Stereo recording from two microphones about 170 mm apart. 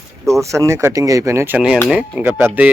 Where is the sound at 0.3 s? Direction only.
20° right (ahead or behind).